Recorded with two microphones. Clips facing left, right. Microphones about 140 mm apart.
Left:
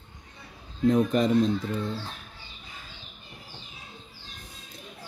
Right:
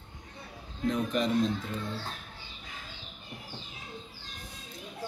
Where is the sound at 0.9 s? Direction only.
45° left (ahead or behind).